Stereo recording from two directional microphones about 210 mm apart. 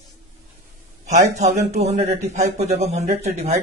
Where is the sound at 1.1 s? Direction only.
35° right (ahead or behind).